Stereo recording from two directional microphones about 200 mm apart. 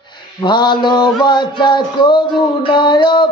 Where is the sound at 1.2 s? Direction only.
25° left (ahead or behind).